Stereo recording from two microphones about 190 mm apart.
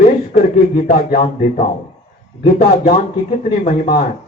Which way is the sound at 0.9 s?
50° left (ahead or behind).